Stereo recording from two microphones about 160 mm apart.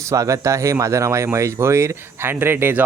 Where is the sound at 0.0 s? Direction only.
20° right (ahead or behind).